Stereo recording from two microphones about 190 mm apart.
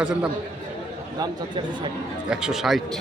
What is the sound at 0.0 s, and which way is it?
Speech, 5° right (ahead or behind).